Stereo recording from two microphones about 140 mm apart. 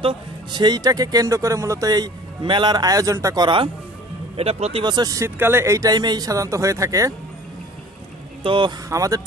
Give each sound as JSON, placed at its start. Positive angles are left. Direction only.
{"t": 0.0, "sound": "speech", "side_deg": -30}
{"t": 3.4, "sound": "speech", "side_deg": -35}
{"t": 4.4, "sound": "speech", "side_deg": -45}
{"t": 4.8, "sound": "speech", "side_deg": -30}
{"t": 8.5, "sound": "speech", "side_deg": -35}
{"t": 8.8, "sound": "speech", "side_deg": -25}